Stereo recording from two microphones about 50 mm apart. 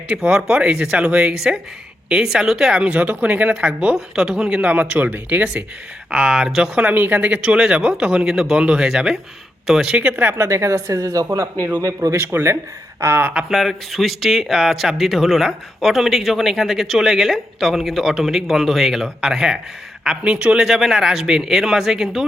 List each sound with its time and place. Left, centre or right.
0.3 s speech: centre
2.8 s speech: right
3.9 s speech: centre
4.6 s speech: right
6.1 s speech: centre
6.9 s speech: right; by 9.9 s centre
9.9 s speech: right
10.3 s a man's voice: right
13.5 s speech: centre; by 20.7 s right
20.7 s speech: centre